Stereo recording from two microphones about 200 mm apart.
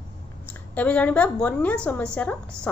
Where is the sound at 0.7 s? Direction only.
5° left (ahead or behind).